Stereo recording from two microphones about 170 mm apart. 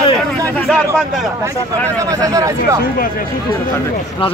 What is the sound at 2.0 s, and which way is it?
Speech, 20° right (ahead or behind).